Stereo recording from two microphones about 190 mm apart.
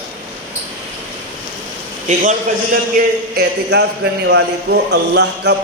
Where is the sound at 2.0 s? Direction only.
45° right (ahead or behind); by 5.5 s 65° right (ahead or behind).